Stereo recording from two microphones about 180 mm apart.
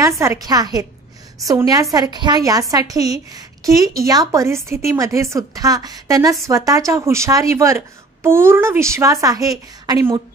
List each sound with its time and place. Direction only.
0.2 s a woman's voice: 20° right (ahead or behind)